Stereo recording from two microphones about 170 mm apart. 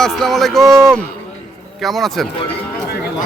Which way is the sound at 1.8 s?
Centre (ahead or behind).